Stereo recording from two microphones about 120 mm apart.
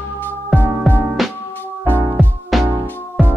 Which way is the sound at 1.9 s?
15° right (ahead or behind).